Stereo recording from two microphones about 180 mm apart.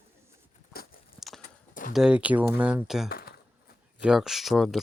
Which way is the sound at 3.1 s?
55° left (ahead or behind).